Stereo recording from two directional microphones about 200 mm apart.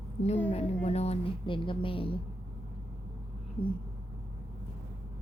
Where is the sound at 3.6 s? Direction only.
25° left (ahead or behind).